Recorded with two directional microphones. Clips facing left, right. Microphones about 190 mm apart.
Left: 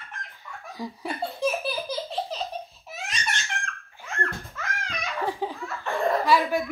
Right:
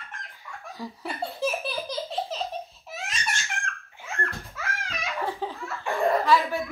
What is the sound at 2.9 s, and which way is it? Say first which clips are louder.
Baby laughter: even; centre (ahead or behind).